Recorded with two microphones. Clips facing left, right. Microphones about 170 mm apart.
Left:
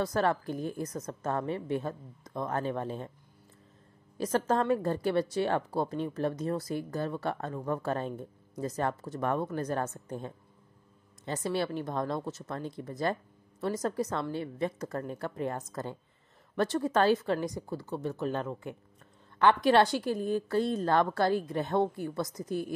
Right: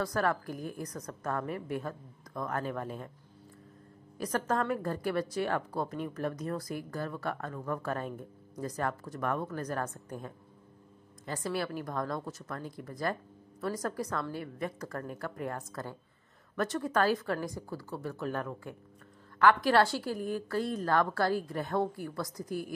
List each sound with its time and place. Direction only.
0.0 s a woman's voice: 25° left (ahead or behind)
4.2 s a woman's voice: 25° left (ahead or behind)